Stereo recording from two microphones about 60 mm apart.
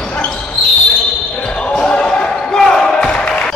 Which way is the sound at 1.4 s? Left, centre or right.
Centre.